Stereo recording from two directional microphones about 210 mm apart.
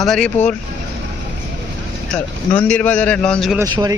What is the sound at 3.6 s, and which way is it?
Speech, 20° right (ahead or behind).